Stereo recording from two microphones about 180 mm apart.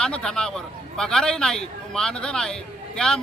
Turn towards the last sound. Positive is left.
turn(degrees=5)  # may be behind; listen again after turning